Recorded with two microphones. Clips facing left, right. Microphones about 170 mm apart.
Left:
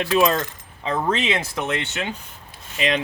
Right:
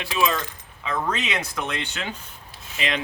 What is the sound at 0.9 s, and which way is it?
Speech, 30° left (ahead or behind).